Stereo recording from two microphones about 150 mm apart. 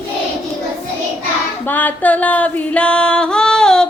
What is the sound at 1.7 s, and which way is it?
Music, 10° left (ahead or behind).